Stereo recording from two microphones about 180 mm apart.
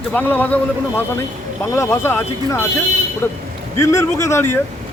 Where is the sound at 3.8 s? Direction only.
15° left (ahead or behind).